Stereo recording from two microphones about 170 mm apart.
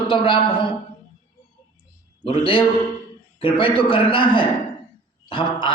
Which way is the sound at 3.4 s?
30° left (ahead or behind).